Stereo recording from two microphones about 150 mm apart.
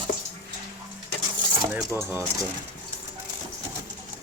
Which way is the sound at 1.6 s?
15° right (ahead or behind).